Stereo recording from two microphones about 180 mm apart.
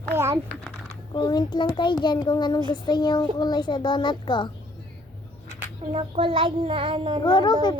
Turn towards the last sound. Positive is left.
turn(degrees=25)  # may be behind; listen again after turning